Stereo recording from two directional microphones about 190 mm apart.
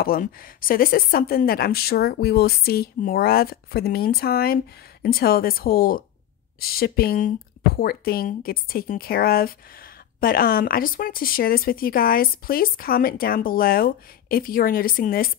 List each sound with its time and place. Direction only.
0.0 s speech: 50° left (ahead or behind)